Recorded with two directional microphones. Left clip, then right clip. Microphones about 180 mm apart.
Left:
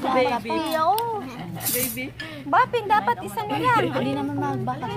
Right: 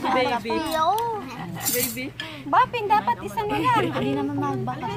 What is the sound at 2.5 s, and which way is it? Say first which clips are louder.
Speech: even; 40° left (ahead or behind).